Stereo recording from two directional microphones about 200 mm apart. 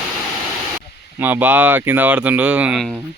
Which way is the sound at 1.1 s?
10° right (ahead or behind).